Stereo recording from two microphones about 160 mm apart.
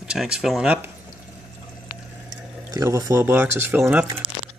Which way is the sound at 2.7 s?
20° right (ahead or behind).